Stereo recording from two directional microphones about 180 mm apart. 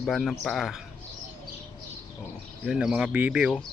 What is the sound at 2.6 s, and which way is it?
Speech, 5° right (ahead or behind).